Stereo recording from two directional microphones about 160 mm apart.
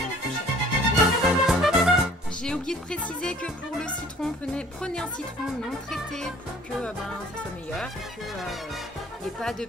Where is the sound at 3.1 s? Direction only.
5° left (ahead or behind).